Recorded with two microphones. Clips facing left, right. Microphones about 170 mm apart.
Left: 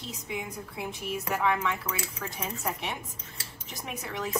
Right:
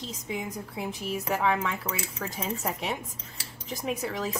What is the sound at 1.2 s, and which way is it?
Speech, 30° right (ahead or behind).